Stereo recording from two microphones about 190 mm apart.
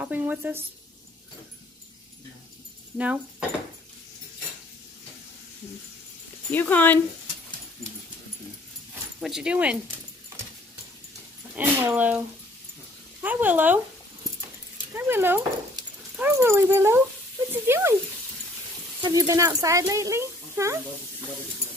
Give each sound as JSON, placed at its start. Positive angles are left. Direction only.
{"t": 0.0, "sound": "speech", "side_deg": -10}
{"t": 3.0, "sound": "speech", "side_deg": -5}
{"t": 6.5, "sound": "speech", "side_deg": 10}
{"t": 9.2, "sound": "speech", "side_deg": -5}
{"t": 11.5, "sound": "speech", "side_deg": -10}
{"t": 15.0, "sound": "speech", "side_deg": -10}
{"t": 19.0, "sound": "speech", "side_deg": -15}